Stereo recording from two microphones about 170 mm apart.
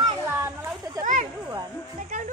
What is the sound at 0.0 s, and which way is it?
Children playing, 15° right (ahead or behind).